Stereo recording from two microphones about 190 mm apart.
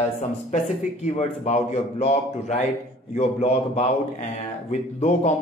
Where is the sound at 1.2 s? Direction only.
35° left (ahead or behind).